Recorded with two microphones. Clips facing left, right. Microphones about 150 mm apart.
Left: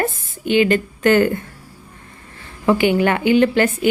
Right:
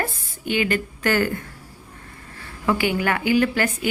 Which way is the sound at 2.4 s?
20° left (ahead or behind).